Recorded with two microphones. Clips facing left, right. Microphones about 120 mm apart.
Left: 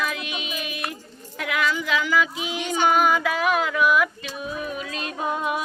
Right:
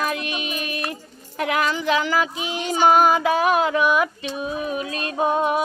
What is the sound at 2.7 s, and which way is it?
Female singing, 35° right (ahead or behind).